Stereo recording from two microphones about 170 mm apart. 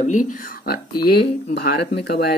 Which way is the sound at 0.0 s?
50° left (ahead or behind).